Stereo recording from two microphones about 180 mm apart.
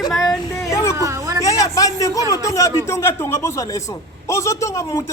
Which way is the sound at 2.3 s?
20° left (ahead or behind).